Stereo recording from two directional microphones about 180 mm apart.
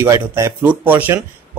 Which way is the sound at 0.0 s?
15° right (ahead or behind).